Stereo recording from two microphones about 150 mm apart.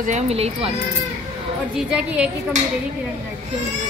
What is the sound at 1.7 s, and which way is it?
Speech, 5° right (ahead or behind).